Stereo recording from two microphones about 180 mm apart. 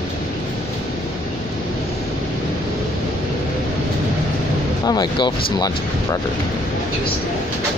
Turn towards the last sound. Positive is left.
turn(degrees=20)  # may be behind; listen again after turning